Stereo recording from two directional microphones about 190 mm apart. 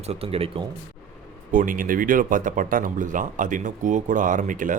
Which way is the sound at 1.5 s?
45° right (ahead or behind).